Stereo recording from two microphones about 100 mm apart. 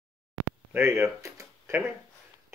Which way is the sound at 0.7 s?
25° right (ahead or behind).